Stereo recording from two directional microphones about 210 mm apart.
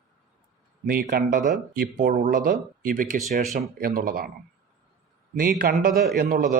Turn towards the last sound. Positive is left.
turn(degrees=-45)  # may be behind; listen again after turning